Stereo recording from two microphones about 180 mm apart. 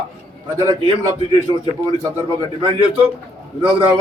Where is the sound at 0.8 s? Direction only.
25° right (ahead or behind).